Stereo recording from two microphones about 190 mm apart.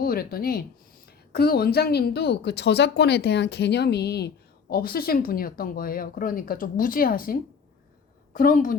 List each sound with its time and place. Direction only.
0.0 s speech: 50° left (ahead or behind)